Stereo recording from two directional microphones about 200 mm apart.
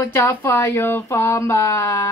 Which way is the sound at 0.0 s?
10° left (ahead or behind).